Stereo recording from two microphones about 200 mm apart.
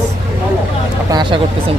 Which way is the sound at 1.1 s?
25° right (ahead or behind).